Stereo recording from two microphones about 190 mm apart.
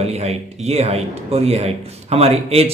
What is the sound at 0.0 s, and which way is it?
A man's voice, 35° right (ahead or behind).